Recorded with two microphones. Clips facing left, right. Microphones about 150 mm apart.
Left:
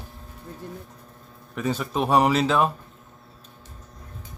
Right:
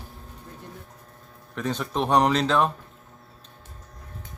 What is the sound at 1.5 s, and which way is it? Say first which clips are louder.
Speech: left 2 dB; 5° left (ahead or behind).